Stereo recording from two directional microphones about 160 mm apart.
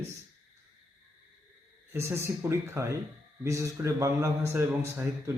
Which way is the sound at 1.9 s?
15° right (ahead or behind).